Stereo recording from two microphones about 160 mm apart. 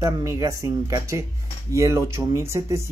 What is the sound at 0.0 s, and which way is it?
Speech, 20° right (ahead or behind).